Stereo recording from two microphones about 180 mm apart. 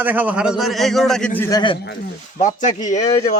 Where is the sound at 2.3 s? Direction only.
40° left (ahead or behind).